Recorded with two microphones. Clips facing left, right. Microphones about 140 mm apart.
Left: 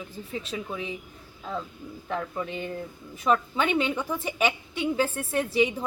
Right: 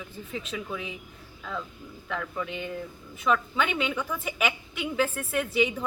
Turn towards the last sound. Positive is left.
turn(degrees=35)  # may be behind; listen again after turning